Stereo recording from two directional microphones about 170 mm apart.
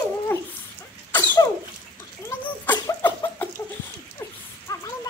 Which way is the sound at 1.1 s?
20° left (ahead or behind).